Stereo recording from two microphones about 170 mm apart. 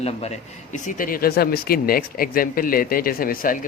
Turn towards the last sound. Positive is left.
turn(degrees=55)  # may be behind; listen again after turning